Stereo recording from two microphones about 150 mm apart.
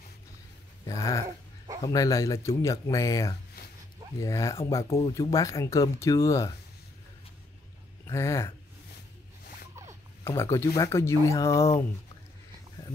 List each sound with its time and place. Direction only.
0.8 s speech: 20° left (ahead or behind)
8.1 s speech: 15° left (ahead or behind)
10.2 s speech: 15° left (ahead or behind)